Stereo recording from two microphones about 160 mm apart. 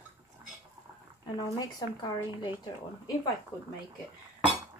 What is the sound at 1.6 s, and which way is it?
Speech, 25° left (ahead or behind).